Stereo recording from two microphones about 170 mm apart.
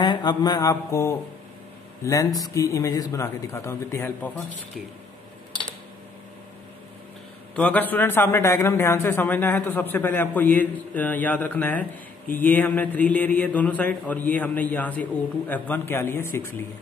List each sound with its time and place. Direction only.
0.0 s speech: 25° left (ahead or behind)
7.5 s a man's voice: 10° left (ahead or behind)